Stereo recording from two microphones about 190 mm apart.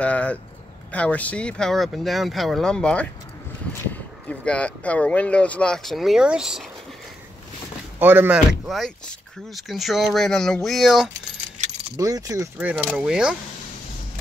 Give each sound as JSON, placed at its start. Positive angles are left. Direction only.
{"t": 0.0, "sound": "speech", "side_deg": 5}
{"t": 8.0, "sound": "speech", "side_deg": -10}
{"t": 12.0, "sound": "speech", "side_deg": -20}
{"t": 12.5, "sound": "speech", "side_deg": -5}